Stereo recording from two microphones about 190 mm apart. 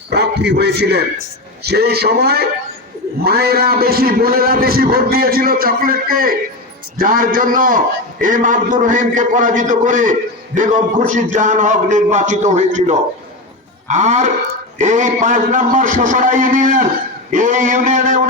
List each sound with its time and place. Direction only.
0.1 s a man's voice: 60° right (ahead or behind); by 18.2 s 45° right (ahead or behind)